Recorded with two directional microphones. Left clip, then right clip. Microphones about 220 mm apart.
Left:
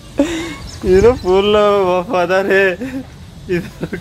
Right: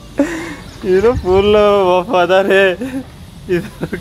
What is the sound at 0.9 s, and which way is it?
Speech, 15° left (ahead or behind).